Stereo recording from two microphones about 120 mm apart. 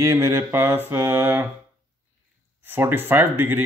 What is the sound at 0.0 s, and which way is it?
Speech, 20° right (ahead or behind).